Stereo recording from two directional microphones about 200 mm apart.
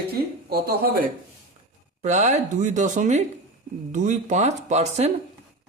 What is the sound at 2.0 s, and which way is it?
Speech, 35° right (ahead or behind).